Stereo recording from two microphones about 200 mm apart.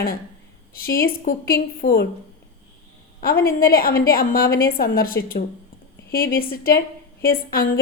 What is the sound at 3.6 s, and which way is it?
A woman's voice, 50° left (ahead or behind).